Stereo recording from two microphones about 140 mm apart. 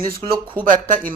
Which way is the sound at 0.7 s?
70° right (ahead or behind).